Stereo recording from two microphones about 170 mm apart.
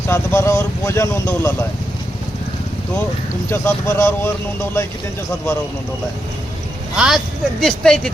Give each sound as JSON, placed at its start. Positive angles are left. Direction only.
{"t": 0.1, "sound": "speech", "side_deg": 15}
{"t": 3.5, "sound": "speech", "side_deg": 15}
{"t": 6.9, "sound": "speech", "side_deg": -5}